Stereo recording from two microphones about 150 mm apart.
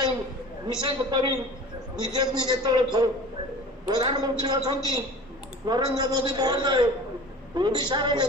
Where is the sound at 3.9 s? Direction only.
30° right (ahead or behind).